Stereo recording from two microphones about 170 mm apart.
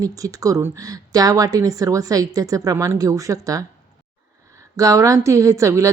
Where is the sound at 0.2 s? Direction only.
20° right (ahead or behind).